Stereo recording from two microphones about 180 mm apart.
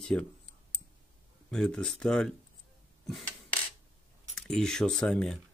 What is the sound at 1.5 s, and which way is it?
Speech, 5° left (ahead or behind).